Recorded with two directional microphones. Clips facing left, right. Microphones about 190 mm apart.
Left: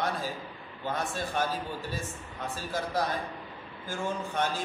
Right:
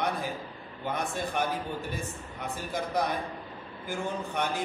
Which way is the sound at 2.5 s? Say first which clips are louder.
Right 1 dB; 15° right (ahead or behind).